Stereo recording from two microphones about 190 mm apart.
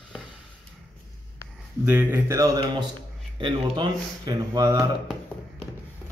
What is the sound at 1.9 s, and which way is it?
Speech, 10° right (ahead or behind).